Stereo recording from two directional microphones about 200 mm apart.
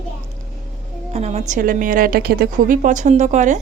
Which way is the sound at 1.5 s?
45° right (ahead or behind).